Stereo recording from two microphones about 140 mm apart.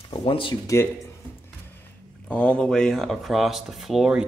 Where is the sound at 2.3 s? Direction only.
10° left (ahead or behind).